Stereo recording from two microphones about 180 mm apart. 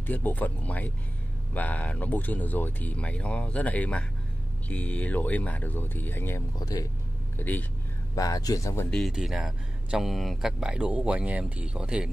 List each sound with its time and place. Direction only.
0.0 s speech: 10° left (ahead or behind)
8.9 s speech: centre (ahead or behind)